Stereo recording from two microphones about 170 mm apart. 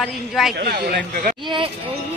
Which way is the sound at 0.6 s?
70° right (ahead or behind).